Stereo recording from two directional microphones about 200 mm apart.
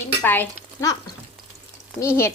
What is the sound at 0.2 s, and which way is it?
Stir, 10° left (ahead or behind).